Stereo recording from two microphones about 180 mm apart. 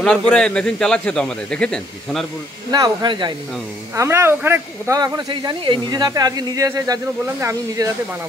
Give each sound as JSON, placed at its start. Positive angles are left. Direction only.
{"t": 0.3, "sound": "speech", "side_deg": 5}
{"t": 2.7, "sound": "speech", "side_deg": -25}